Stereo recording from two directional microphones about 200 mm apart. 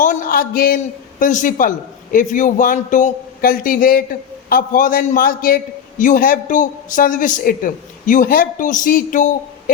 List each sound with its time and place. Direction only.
0.0 s a man's voice: 45° left (ahead or behind)